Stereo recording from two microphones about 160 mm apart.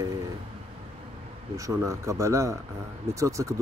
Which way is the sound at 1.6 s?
20° right (ahead or behind).